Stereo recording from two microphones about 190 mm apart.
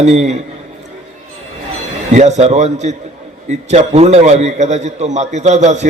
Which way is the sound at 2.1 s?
35° right (ahead or behind).